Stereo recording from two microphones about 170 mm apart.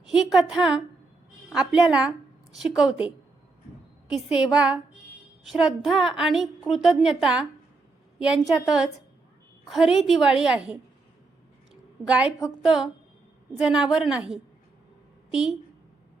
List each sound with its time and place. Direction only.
0.1 s a woman's voice: centre (ahead or behind)
4.1 s a woman's voice: 5° right (ahead or behind)